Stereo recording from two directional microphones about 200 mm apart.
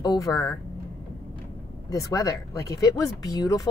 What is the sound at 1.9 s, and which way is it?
Speech, 15° left (ahead or behind).